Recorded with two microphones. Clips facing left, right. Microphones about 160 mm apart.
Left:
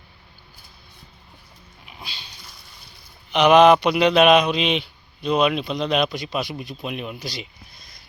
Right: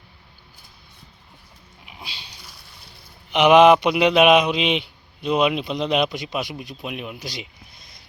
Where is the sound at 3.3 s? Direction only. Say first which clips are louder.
Right 1 dB; 15° right (ahead or behind).